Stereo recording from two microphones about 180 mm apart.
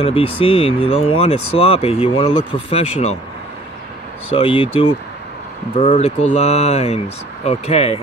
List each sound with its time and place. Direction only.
0.0 s speech: 30° left (ahead or behind)
4.4 s speech: 30° left (ahead or behind)